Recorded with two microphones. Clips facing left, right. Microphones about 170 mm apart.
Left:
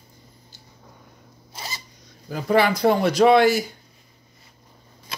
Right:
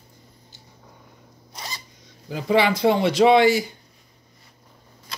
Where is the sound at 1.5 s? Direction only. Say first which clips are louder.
Even; 5° left (ahead or behind).